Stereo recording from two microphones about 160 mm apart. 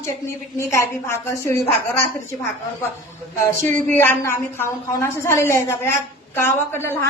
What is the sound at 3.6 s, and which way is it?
A woman's voice, 10° left (ahead or behind).